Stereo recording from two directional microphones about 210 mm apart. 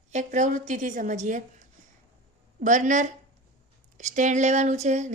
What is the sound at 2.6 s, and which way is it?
A woman's voice, 35° right (ahead or behind).